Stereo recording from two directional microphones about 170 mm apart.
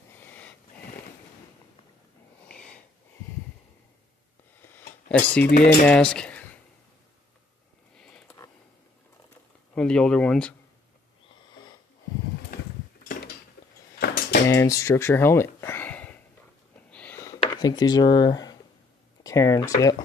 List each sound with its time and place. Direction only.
0.1 s a sound: 10° left (ahead or behind)
2.4 s a sound: 5° left (ahead or behind)
5.1 s cutlery: 10° left (ahead or behind)
5.7 s speech: 5° left (ahead or behind)
9.8 s speech: 5° left (ahead or behind)
13.9 s cutlery: 60° left (ahead or behind)
14.5 s speech: 15° left (ahead or behind)
16.9 s a sound: 10° left (ahead or behind)
17.6 s speech: 25° left (ahead or behind)